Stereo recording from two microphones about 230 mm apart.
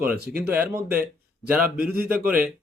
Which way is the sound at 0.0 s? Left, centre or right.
Right.